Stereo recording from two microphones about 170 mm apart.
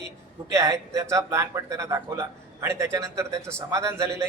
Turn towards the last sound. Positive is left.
turn(degrees=-15)  # may be behind; listen again after turning